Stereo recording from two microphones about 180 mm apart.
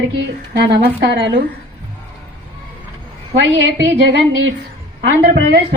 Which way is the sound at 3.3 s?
90° right.